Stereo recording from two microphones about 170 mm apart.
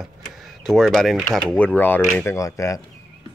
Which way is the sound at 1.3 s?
5° left (ahead or behind).